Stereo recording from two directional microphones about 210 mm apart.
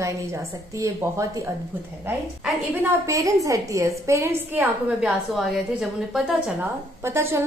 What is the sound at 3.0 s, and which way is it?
A woman's voice, 15° right (ahead or behind).